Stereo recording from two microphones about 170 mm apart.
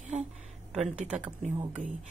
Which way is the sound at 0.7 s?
5° right (ahead or behind).